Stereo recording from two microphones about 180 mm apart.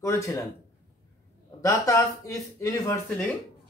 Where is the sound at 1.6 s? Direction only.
15° left (ahead or behind).